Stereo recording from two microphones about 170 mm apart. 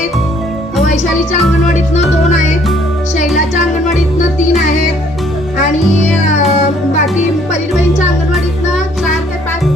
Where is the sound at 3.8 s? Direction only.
45° left (ahead or behind).